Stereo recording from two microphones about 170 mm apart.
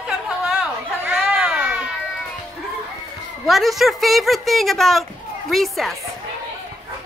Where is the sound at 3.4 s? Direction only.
Centre (ahead or behind).